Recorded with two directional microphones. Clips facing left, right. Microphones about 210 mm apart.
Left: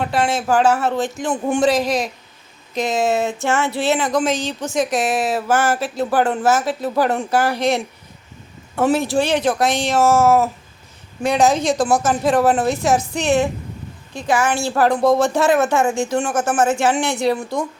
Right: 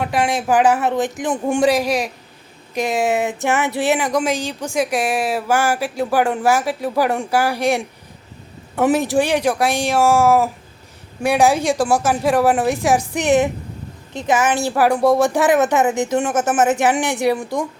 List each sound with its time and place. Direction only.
0.0 s a woman's voice: 15° right (ahead or behind)